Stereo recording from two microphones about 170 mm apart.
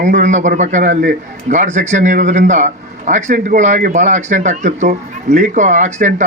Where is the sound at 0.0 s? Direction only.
45° right (ahead or behind).